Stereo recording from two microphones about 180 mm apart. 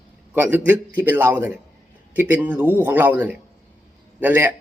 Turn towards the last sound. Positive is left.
turn(degrees=-10)  # may be behind; listen again after turning